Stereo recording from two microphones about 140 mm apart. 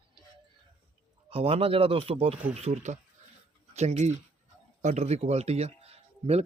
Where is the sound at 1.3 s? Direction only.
45° right (ahead or behind).